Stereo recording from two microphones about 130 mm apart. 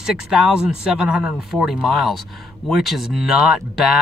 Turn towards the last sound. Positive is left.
turn(degrees=-5)  # may be behind; listen again after turning